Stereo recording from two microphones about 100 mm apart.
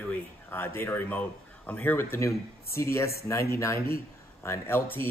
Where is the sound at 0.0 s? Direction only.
20° left (ahead or behind).